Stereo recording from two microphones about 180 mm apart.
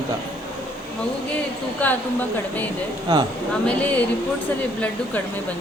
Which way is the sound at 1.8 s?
10° left (ahead or behind).